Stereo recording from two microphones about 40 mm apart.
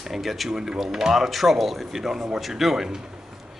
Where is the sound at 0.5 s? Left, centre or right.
Centre.